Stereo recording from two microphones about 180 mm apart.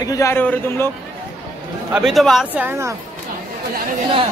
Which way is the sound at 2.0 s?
Centre (ahead or behind).